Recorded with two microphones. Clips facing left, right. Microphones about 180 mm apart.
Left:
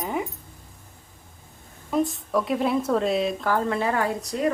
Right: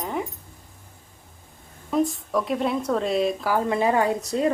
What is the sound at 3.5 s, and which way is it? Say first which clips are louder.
Speech: right 4 dB; 15° right (ahead or behind).